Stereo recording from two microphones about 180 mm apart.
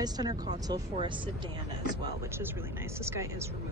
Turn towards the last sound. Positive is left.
turn(degrees=-15)  # may be behind; listen again after turning